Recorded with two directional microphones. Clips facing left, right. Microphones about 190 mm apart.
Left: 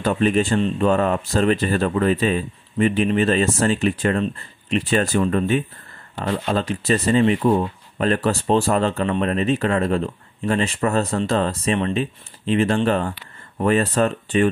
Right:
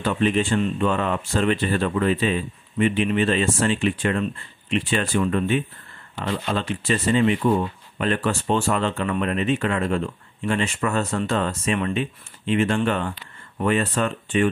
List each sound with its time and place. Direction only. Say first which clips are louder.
0.0 s speech: left 3 dB; 45° left (ahead or behind)